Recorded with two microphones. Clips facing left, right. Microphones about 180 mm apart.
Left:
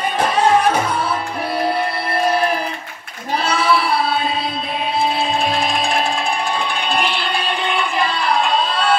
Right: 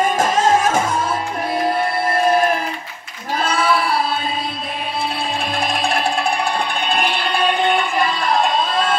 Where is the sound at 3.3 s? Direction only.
50° right (ahead or behind).